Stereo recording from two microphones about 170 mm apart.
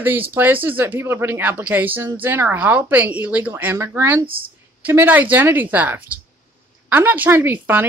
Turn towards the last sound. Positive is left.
turn(degrees=-10)  # may be behind; listen again after turning